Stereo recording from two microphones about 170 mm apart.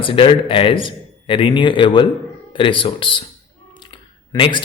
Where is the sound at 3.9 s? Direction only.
30° left (ahead or behind).